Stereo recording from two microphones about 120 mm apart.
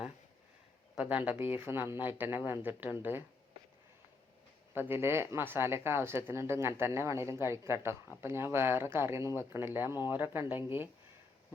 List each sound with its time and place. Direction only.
0.9 s speech: 15° right (ahead or behind)
4.7 s speech: 20° right (ahead or behind)